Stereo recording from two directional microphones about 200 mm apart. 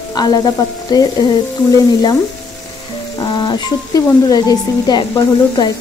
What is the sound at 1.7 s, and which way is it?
Speech, 20° left (ahead or behind).